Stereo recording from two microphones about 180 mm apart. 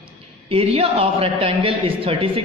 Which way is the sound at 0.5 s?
35° right (ahead or behind).